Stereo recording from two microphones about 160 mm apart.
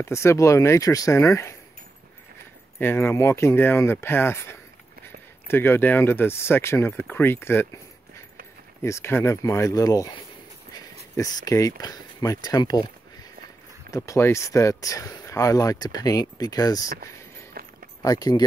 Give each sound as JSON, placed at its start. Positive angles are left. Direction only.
{"t": 0.0, "sound": "speech", "side_deg": 15}
{"t": 2.8, "sound": "speech", "side_deg": 15}
{"t": 8.8, "sound": "speech", "side_deg": 15}
{"t": 11.1, "sound": "speech", "side_deg": 20}
{"t": 13.9, "sound": "speech", "side_deg": 20}
{"t": 17.6, "sound": "a sound", "side_deg": -65}
{"t": 18.0, "sound": "speech", "side_deg": 25}